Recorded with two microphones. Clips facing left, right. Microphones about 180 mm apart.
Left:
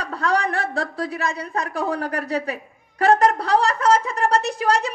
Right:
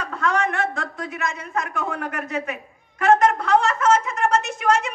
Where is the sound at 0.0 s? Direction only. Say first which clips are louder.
Left 1 dB; 35° left (ahead or behind).